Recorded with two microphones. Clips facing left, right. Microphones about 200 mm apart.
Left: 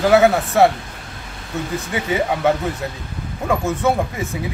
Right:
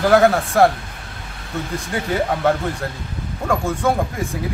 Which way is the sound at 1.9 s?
5° left (ahead or behind).